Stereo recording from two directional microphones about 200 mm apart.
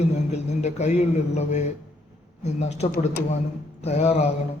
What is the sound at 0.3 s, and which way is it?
A man's voice, 35° left (ahead or behind).